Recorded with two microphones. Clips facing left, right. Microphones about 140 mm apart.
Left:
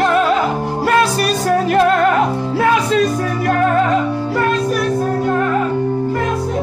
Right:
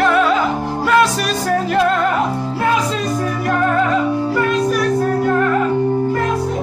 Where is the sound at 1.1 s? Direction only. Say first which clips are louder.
Left 3 dB; 55° left (ahead or behind).